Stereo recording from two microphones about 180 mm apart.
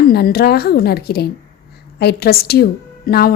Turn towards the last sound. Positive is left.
turn(degrees=60)  # may be behind; listen again after turning